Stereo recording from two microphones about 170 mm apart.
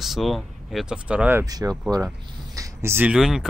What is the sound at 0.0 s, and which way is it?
Speech, centre (ahead or behind).